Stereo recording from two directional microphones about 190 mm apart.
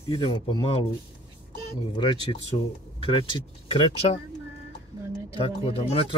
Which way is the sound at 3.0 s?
30° left (ahead or behind).